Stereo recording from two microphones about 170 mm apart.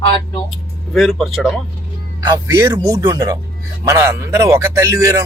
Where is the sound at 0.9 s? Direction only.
Centre (ahead or behind).